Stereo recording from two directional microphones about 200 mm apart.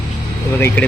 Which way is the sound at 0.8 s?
5° left (ahead or behind).